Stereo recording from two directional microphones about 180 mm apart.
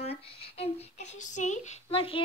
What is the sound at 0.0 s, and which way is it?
Speech, 35° left (ahead or behind).